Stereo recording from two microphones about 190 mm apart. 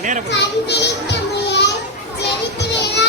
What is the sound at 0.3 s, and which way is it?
Children playing, 65° left (ahead or behind).